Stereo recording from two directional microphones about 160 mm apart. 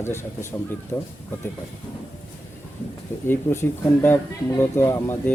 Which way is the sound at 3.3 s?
15° left (ahead or behind).